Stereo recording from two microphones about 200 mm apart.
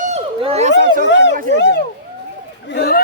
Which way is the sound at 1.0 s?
65° left (ahead or behind).